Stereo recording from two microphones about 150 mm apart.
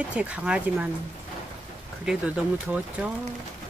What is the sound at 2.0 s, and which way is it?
Speech, 5° right (ahead or behind).